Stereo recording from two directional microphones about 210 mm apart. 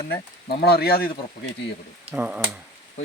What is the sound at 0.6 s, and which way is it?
Speech, 50° left (ahead or behind).